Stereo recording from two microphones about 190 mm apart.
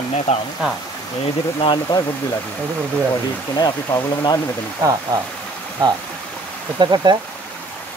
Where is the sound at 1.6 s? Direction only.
25° left (ahead or behind).